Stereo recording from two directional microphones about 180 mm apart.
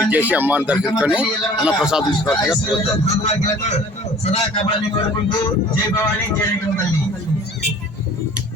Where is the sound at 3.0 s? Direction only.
35° left (ahead or behind).